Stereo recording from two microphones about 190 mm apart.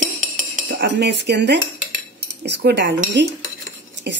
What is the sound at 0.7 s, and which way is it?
Speech, 65° right (ahead or behind).